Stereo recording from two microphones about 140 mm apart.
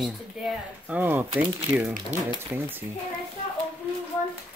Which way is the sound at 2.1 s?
60° right (ahead or behind).